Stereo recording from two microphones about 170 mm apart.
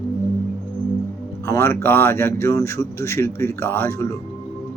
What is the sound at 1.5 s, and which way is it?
Speech, 15° left (ahead or behind).